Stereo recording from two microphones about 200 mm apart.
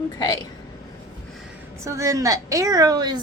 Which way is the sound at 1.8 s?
15° right (ahead or behind).